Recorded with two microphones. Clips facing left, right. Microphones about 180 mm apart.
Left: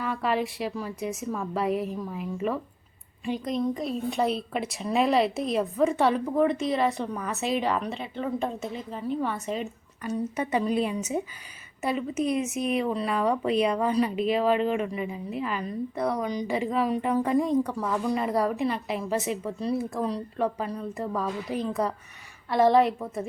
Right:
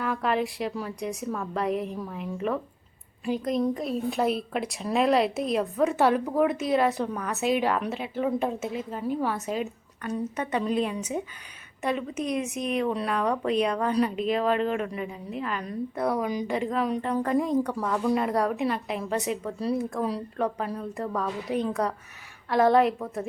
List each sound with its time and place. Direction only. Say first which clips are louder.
0.0 s speech: right 1 dB; centre (ahead or behind)